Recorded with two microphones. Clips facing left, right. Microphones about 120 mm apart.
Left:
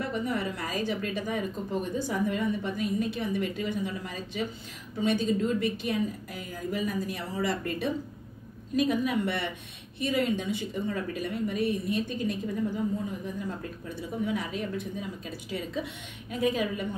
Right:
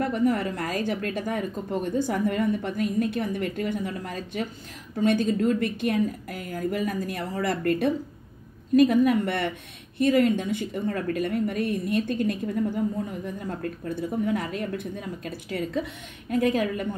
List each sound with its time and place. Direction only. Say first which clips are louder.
0.1 s a woman's voice: right 6 dB; 55° right (ahead or behind)
13.6 s a woman's voice: right 7 dB; 55° right (ahead or behind)